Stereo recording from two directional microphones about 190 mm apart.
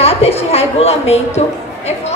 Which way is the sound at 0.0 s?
30° left (ahead or behind).